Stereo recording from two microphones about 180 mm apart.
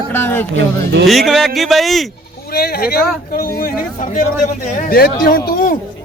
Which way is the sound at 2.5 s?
60° left (ahead or behind).